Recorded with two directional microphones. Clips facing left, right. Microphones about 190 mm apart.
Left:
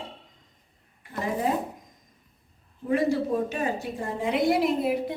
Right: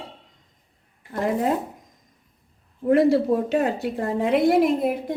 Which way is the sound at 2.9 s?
65° right (ahead or behind).